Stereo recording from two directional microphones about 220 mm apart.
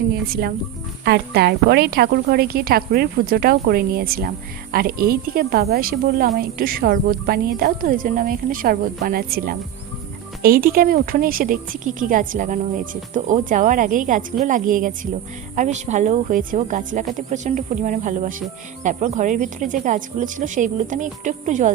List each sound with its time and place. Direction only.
0.1 s speech: 45° right (ahead or behind)